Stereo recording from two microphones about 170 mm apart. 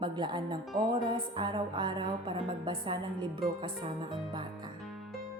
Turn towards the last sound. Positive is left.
turn(degrees=-30)  # may be behind; listen again after turning